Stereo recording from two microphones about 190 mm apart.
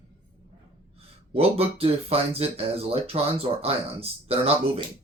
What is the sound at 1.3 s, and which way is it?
Speech, 30° right (ahead or behind).